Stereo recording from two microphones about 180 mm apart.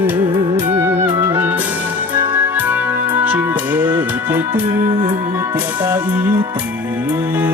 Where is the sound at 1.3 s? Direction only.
10° right (ahead or behind).